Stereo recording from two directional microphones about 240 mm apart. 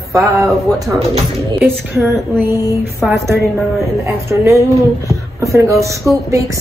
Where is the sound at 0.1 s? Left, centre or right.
Centre.